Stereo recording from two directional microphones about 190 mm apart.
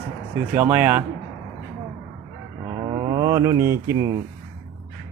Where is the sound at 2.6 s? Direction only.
25° right (ahead or behind).